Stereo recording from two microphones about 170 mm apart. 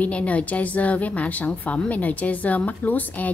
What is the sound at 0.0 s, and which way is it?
A woman's voice, 10° left (ahead or behind).